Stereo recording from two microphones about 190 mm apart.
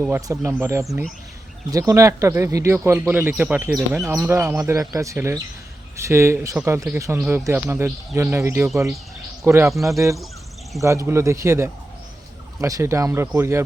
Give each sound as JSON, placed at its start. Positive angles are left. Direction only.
{"t": 0.3, "sound": "speech", "side_deg": -15}
{"t": 1.9, "sound": "speech", "side_deg": -15}